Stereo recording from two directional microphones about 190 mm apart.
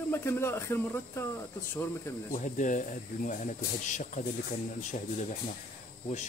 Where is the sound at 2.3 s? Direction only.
40° left (ahead or behind).